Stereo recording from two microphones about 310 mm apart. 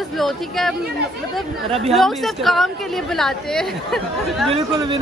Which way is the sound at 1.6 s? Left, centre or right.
Centre.